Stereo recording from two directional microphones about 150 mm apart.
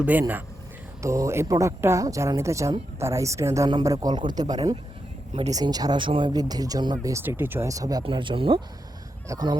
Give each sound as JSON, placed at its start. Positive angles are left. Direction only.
{"t": 0.0, "sound": "speech", "side_deg": -10}